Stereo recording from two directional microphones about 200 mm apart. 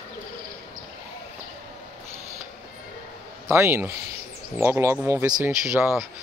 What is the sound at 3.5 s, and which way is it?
Speech, 10° right (ahead or behind).